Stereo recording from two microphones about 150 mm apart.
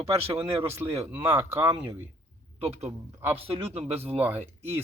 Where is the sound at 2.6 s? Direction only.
40° right (ahead or behind).